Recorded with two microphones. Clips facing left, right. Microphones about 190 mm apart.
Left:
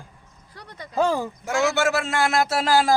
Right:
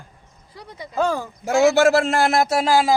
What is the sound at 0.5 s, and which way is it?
Speech, 10° right (ahead or behind).